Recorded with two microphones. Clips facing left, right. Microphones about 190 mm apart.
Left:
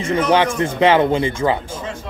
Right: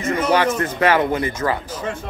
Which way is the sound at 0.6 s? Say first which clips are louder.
Left 3 dB; 25° left (ahead or behind).